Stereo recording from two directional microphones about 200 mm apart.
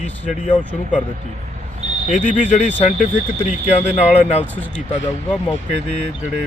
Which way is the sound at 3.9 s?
35° left (ahead or behind).